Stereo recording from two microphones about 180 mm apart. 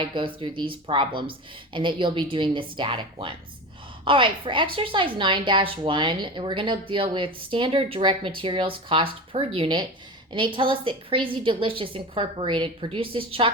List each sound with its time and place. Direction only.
0.0 s a woman's voice: 30° right (ahead or behind)